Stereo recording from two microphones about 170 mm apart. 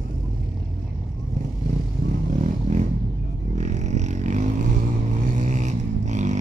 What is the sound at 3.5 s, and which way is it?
Vehicle, 45° right (ahead or behind).